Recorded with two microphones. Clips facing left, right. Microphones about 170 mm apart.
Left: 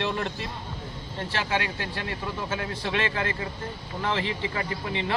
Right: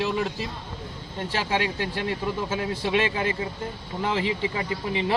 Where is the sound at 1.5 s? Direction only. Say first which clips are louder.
Right 3 dB; 20° right (ahead or behind).